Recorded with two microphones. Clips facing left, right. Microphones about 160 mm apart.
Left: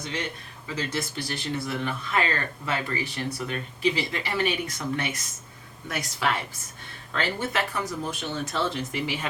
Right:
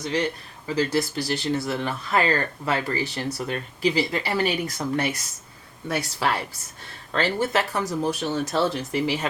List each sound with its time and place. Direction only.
0.8 s speech: 35° right (ahead or behind)